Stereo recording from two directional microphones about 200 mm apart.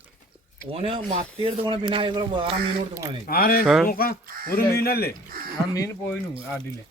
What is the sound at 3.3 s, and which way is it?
Speech, 50° left (ahead or behind).